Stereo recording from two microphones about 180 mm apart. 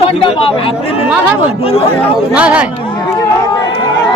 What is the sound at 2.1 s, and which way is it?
Speech, 5° right (ahead or behind).